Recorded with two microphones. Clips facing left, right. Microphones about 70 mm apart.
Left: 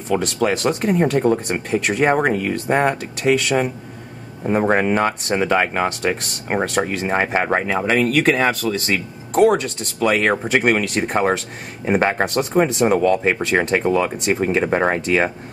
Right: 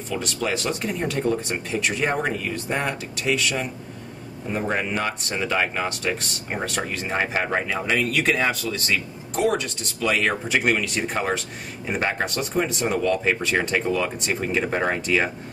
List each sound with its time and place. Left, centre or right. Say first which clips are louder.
0.1 s speech: left 7 dB; left
9.3 s speech: left 8 dB; left